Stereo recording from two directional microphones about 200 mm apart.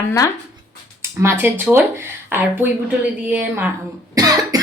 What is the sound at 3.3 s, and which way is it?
Speech, 10° right (ahead or behind).